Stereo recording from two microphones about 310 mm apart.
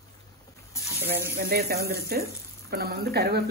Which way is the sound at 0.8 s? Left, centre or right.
Centre.